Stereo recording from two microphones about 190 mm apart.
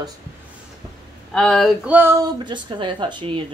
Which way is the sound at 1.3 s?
5° left (ahead or behind).